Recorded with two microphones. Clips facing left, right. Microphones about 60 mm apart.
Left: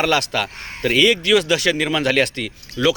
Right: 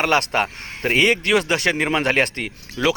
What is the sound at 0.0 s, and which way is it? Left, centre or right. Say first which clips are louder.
A man's voice: even; right.